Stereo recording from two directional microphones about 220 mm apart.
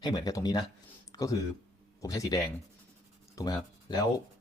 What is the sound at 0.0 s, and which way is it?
Speech, 20° left (ahead or behind).